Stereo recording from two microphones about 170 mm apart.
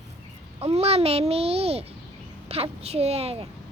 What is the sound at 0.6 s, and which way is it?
Babbling, 35° right (ahead or behind).